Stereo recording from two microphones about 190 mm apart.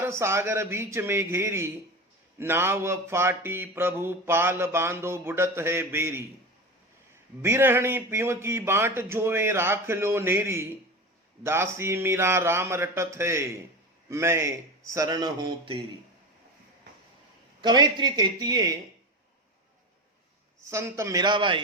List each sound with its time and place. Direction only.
0.0 s mantra: 15° right (ahead or behind)
7.4 s mantra: 10° right (ahead or behind)
17.6 s speech: 20° right (ahead or behind)
20.6 s mantra: 15° right (ahead or behind)